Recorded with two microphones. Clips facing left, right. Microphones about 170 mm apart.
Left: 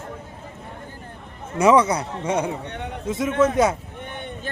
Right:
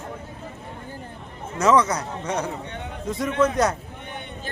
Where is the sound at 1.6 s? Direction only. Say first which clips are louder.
Left 3 dB; 10° left (ahead or behind).